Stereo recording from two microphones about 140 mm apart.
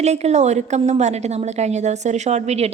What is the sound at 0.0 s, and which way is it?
A woman's voice, 50° right (ahead or behind).